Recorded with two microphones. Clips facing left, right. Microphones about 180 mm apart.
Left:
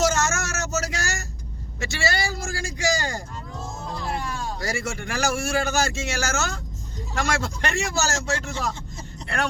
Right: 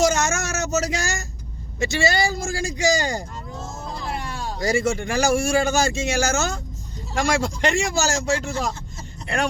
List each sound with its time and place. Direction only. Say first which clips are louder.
0.0 s vehicle: right 3 dB; 15° right (ahead or behind)
1.8 s speech: right 5 dB; 20° right (ahead or behind)
3.6 s music: left 1 dB; 5° right (ahead or behind)
4.6 s speech: right 11 dB; 20° right (ahead or behind)